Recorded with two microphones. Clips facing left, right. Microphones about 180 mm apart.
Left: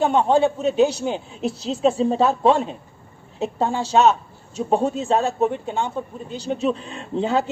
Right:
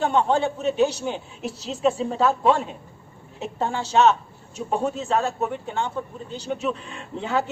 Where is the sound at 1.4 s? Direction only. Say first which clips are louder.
Left 6 dB; 30° left (ahead or behind).